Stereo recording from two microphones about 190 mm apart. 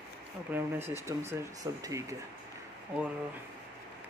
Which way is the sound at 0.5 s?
10° right (ahead or behind).